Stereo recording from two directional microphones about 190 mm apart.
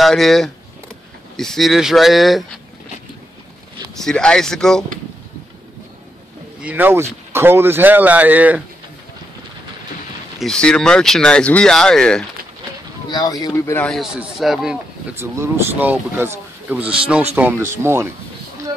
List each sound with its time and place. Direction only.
0.0 s speech: centre (ahead or behind)
4.0 s speech: 5° left (ahead or behind)
6.6 s speech: 10° right (ahead or behind)
10.4 s speech: 5° left (ahead or behind)
13.1 s speech: 20° left (ahead or behind)
13.8 s speech: centre (ahead or behind)
15.1 s speech: 15° right (ahead or behind)